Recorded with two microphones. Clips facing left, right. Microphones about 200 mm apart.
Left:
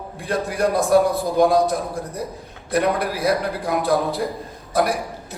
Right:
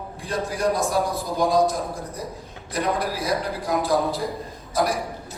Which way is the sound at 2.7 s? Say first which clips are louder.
Left 4 dB; 60° left (ahead or behind).